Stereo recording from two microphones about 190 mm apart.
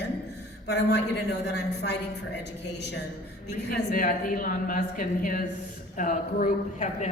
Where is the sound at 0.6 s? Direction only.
60° left (ahead or behind).